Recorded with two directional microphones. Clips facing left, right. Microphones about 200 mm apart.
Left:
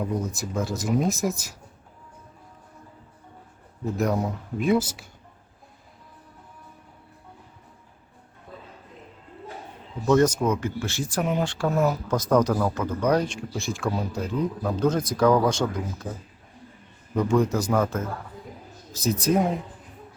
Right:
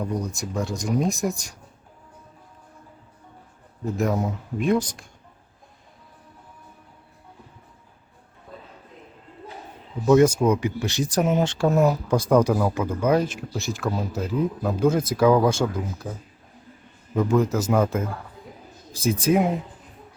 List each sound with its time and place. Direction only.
0.0 s speech: 5° left (ahead or behind)
3.8 s speech: centre (ahead or behind)
10.1 s speech: 10° right (ahead or behind)
17.2 s speech: centre (ahead or behind)